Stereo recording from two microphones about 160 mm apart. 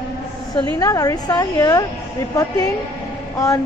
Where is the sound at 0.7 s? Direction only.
20° left (ahead or behind).